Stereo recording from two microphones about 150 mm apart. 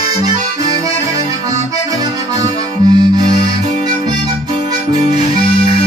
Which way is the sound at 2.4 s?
25° right (ahead or behind).